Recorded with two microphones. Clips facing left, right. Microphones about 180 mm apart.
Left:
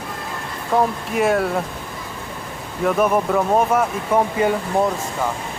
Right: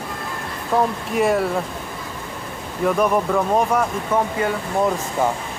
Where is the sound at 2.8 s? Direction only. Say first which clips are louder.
Left 1 dB; 5° left (ahead or behind).